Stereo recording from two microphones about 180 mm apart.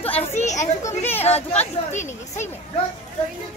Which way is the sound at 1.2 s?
35° left (ahead or behind).